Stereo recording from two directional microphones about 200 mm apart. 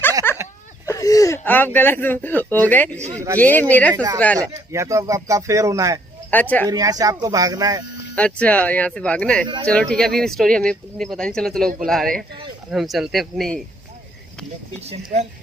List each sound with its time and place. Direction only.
0.2 s a sound: 10° left (ahead or behind)
0.8 s speech: 15° left (ahead or behind)
3.9 s a woman's voice: 20° right (ahead or behind)
6.3 s speech: 10° left (ahead or behind)
6.7 s speech: 20° right (ahead or behind)
8.2 s speech: 5° left (ahead or behind)
14.9 s speech: 35° right (ahead or behind)